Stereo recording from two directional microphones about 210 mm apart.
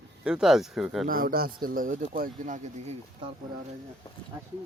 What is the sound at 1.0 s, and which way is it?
Speech, 45° right (ahead or behind).